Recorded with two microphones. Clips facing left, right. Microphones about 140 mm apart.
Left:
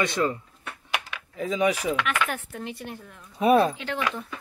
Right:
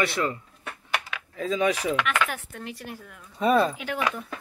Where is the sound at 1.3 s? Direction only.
15° left (ahead or behind).